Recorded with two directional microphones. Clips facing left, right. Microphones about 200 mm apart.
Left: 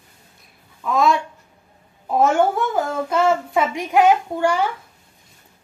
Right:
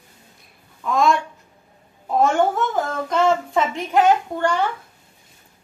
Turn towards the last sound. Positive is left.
turn(degrees=10)  # may be behind; listen again after turning